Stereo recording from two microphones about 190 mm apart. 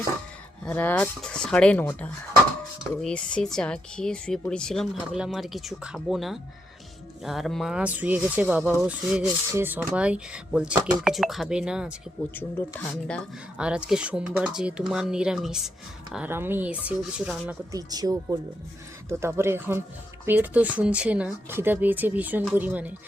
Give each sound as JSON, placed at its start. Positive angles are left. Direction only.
{"t": 0.6, "sound": "a woman's voice", "side_deg": 10}
{"t": 3.0, "sound": "a woman's voice", "side_deg": 5}
{"t": 12.3, "sound": "speech", "side_deg": 10}
{"t": 13.6, "sound": "a woman's voice", "side_deg": -5}
{"t": 17.7, "sound": "speech", "side_deg": -20}